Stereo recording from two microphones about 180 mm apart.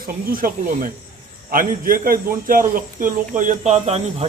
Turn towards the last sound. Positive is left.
turn(degrees=-35)  # may be behind; listen again after turning